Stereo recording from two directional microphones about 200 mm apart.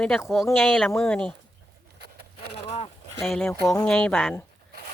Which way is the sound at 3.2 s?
Centre (ahead or behind).